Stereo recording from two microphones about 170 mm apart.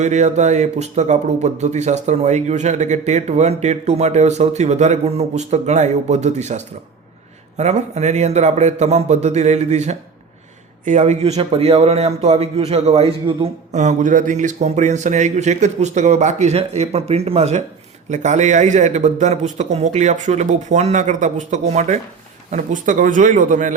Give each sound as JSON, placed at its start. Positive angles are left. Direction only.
{"t": 0.0, "sound": "a man's voice", "side_deg": -45}